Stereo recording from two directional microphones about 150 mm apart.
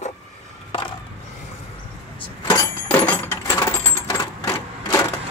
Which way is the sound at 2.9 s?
10° left (ahead or behind).